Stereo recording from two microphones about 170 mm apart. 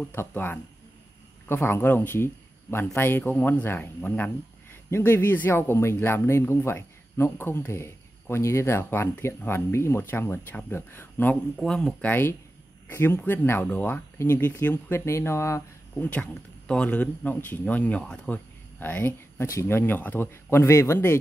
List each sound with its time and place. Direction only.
0.1 s speech: 15° left (ahead or behind)